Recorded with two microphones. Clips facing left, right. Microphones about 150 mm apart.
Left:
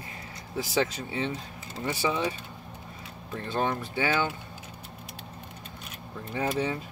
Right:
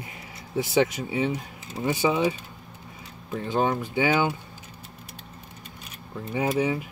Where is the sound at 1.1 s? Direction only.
15° right (ahead or behind).